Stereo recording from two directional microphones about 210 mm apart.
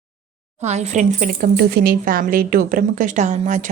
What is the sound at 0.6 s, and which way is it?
Speech, 30° right (ahead or behind).